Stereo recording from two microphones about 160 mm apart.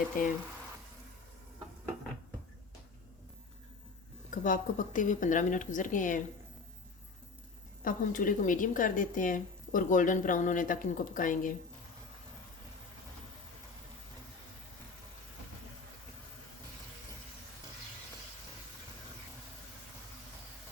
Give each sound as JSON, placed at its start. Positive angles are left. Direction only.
{"t": 0.2, "sound": "speech", "side_deg": 55}
{"t": 4.3, "sound": "speech", "side_deg": 55}
{"t": 7.9, "sound": "speech", "side_deg": 55}